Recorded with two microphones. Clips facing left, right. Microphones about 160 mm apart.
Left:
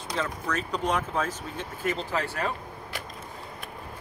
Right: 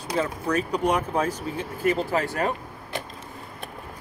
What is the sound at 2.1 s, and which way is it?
Speech, 40° right (ahead or behind).